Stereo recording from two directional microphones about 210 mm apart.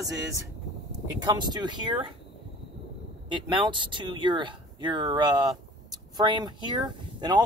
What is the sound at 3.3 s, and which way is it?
Speech, 20° right (ahead or behind).